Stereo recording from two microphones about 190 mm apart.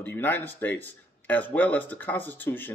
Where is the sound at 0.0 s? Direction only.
10° left (ahead or behind).